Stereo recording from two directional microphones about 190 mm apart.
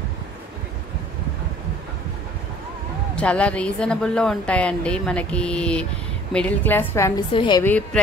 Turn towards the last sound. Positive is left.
turn(degrees=10)  # may be behind; listen again after turning